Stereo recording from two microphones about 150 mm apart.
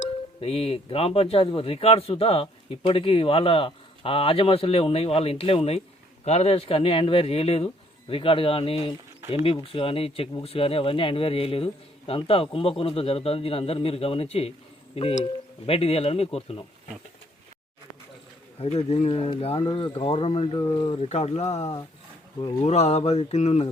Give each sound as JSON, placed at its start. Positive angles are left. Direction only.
{"t": 0.0, "sound": "speech", "side_deg": 40}
{"t": 18.6, "sound": "speech", "side_deg": 40}